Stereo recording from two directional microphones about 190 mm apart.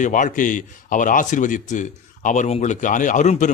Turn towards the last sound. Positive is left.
turn(degrees=40)  # may be behind; listen again after turning